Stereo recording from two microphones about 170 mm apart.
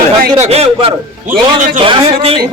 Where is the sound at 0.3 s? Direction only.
40° right (ahead or behind).